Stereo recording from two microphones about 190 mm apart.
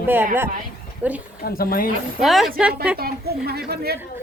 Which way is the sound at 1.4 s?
50° left (ahead or behind).